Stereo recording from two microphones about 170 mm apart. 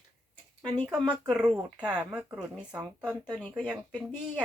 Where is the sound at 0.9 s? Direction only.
5° right (ahead or behind).